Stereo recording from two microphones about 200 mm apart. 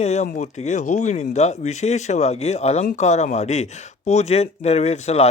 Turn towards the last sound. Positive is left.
turn(degrees=35)  # may be behind; listen again after turning